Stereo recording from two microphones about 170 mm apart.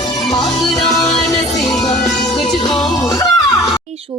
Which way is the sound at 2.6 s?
25° left (ahead or behind).